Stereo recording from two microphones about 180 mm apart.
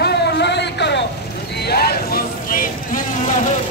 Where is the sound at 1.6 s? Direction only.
60° left (ahead or behind).